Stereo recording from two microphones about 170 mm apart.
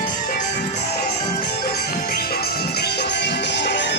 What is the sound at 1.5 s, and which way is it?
Music, 65° left (ahead or behind).